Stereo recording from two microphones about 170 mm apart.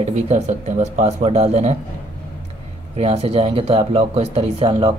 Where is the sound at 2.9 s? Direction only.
35° right (ahead or behind).